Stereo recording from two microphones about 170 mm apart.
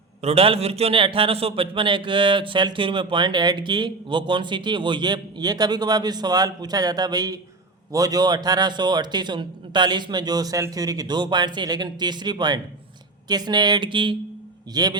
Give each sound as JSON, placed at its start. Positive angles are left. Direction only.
{"t": 0.2, "sound": "a man's voice", "side_deg": -35}